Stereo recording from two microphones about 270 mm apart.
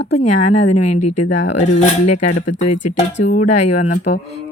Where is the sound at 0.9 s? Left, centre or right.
Left.